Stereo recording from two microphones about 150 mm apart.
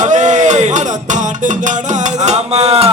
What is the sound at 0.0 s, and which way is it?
Music, 55° right (ahead or behind).